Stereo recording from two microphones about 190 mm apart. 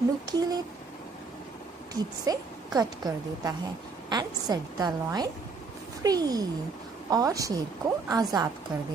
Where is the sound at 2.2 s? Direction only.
20° right (ahead or behind).